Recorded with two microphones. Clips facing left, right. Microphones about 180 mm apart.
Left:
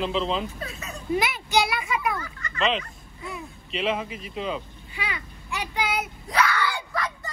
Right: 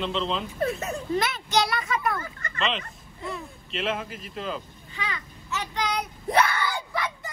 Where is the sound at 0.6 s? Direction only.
55° right (ahead or behind).